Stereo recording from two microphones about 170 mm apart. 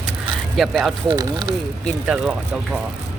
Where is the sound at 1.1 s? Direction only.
25° right (ahead or behind).